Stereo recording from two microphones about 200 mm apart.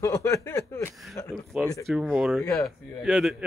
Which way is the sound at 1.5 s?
5° right (ahead or behind).